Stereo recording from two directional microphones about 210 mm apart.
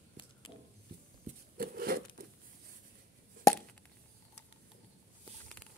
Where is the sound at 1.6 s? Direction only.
45° right (ahead or behind).